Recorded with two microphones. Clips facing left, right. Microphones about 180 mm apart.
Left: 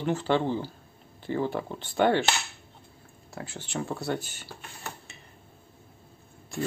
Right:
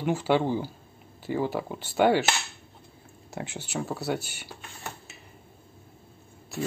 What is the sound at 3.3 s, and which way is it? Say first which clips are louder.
Speech: right 3 dB; 20° right (ahead or behind).